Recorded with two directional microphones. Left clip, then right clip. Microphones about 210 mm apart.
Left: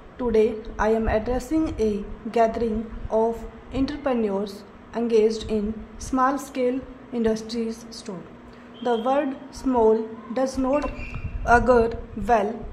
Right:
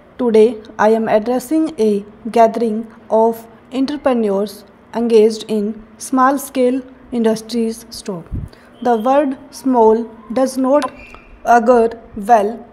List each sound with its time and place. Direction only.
0.2 s a woman's voice: 35° right (ahead or behind)